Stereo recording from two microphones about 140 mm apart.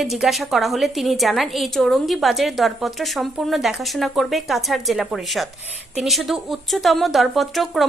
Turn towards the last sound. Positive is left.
turn(degrees=0)  # may be behind; listen again after turning